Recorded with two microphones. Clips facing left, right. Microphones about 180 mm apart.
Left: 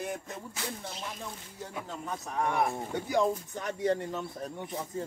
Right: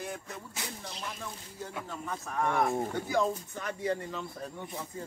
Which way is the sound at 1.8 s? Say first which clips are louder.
Left 1 dB; 20° left (ahead or behind).